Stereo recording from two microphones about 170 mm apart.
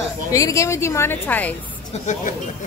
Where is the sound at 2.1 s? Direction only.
45° left (ahead or behind).